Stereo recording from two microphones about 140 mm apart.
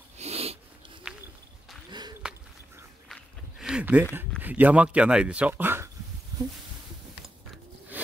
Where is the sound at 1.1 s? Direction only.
5° right (ahead or behind).